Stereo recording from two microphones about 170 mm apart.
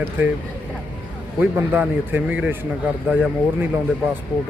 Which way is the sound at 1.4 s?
10° right (ahead or behind).